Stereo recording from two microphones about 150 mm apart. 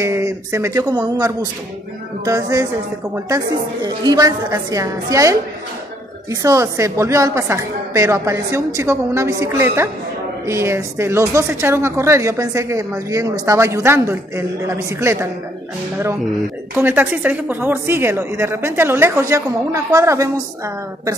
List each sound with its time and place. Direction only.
0.0 s a woman's voice: 20° right (ahead or behind)
6.4 s a woman's voice: 20° right (ahead or behind)
16.7 s speech: 15° right (ahead or behind)